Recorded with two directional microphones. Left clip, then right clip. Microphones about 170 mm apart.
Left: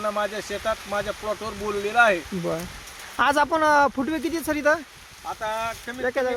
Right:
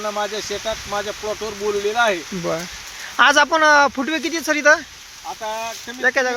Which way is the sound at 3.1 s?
10° left (ahead or behind).